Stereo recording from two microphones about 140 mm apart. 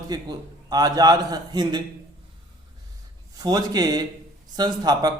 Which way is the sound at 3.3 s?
30° right (ahead or behind).